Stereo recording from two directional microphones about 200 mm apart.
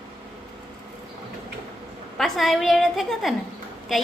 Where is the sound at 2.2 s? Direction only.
Centre (ahead or behind).